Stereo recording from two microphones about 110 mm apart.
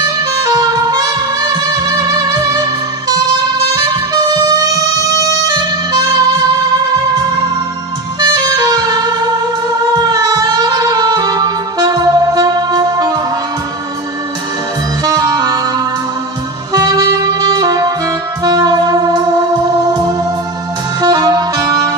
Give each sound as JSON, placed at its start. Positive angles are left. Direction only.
{"t": 0.0, "sound": "music", "side_deg": -35}
{"t": 3.8, "sound": "music", "side_deg": -35}
{"t": 8.2, "sound": "music", "side_deg": -35}
{"t": 15.0, "sound": "saxophone", "side_deg": -35}
{"t": 19.6, "sound": "music", "side_deg": -35}